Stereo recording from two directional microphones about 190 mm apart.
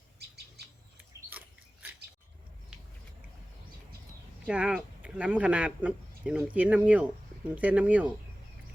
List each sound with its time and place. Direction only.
0.6 s bird: 60° right (ahead or behind)
0.9 s mouse: 10° right (ahead or behind)
4.4 s speech: 5° right (ahead or behind)